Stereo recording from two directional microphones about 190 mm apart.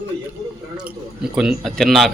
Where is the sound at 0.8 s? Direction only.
5° right (ahead or behind).